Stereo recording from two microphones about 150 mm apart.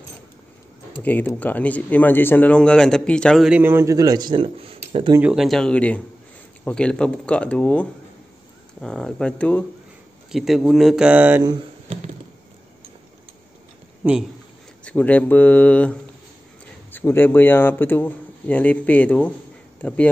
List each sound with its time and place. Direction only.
1.0 s speech: 10° left (ahead or behind)
3.4 s speech: 10° right (ahead or behind); by 5.1 s 40° right (ahead or behind)
5.2 s speech: 5° right (ahead or behind)
10.3 s speech: centre (ahead or behind)
14.9 s speech: 10° left (ahead or behind)